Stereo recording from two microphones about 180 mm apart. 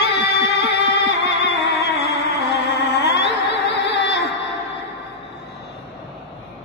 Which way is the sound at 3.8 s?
70° left (ahead or behind).